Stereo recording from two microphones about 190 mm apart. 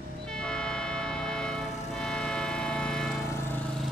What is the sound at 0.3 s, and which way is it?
Train, 5° left (ahead or behind).